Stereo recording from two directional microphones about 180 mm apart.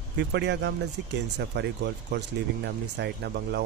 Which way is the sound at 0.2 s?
70° right (ahead or behind).